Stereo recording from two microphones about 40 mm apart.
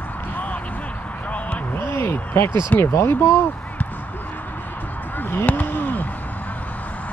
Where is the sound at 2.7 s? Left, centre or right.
Left.